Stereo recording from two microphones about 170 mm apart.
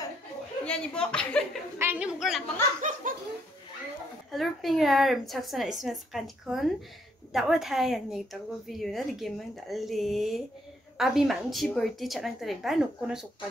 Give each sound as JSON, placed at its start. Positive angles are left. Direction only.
{"t": 0.7, "sound": "a woman's voice", "side_deg": 5}
{"t": 1.8, "sound": "a woman's voice", "side_deg": -10}
{"t": 2.8, "sound": "speech", "side_deg": -50}
{"t": 4.3, "sound": "a woman's voice", "side_deg": 0}